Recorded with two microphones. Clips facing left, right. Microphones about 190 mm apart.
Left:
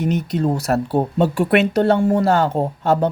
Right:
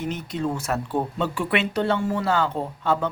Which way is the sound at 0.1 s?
40° left (ahead or behind).